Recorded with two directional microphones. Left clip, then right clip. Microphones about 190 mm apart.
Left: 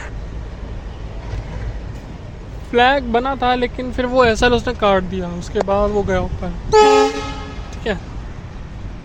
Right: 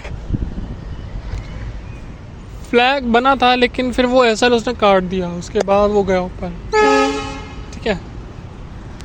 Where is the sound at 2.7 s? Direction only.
20° right (ahead or behind).